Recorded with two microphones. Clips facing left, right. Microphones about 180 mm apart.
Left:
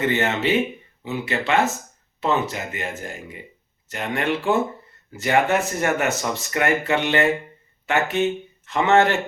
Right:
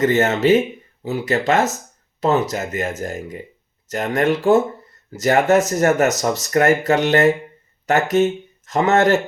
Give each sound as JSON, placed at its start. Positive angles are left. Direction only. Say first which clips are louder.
{"t": 0.0, "sound": "speech", "louder": "right 6 dB", "side_deg": -40}